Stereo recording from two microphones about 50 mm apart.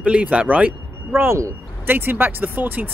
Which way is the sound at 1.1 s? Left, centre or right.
Right.